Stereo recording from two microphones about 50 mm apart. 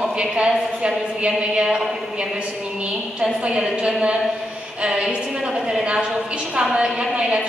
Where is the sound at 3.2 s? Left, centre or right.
Centre.